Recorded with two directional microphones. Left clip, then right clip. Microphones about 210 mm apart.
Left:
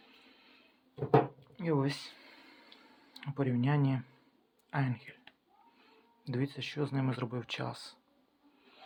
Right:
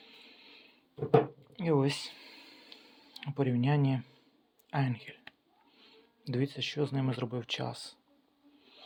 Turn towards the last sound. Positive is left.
turn(degrees=-5)  # may be behind; listen again after turning